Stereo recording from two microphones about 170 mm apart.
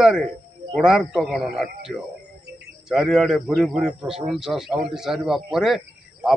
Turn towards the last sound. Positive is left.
turn(degrees=0)  # may be behind; listen again after turning